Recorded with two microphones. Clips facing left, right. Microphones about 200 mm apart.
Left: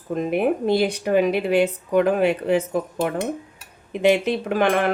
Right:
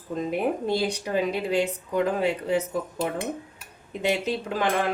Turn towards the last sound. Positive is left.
turn(degrees=70)  # may be behind; listen again after turning